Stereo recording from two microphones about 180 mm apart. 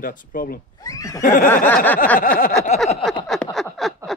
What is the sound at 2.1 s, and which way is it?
Speech, 50° left (ahead or behind).